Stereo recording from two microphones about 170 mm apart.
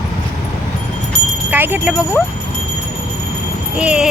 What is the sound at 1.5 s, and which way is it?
Speech, 10° right (ahead or behind).